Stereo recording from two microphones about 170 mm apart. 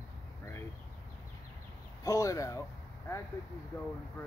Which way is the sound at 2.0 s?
20° left (ahead or behind).